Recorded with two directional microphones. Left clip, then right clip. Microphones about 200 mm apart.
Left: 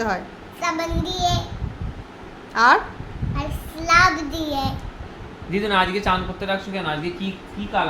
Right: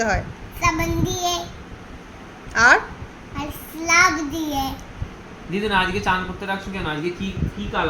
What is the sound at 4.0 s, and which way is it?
Speech, 5° left (ahead or behind).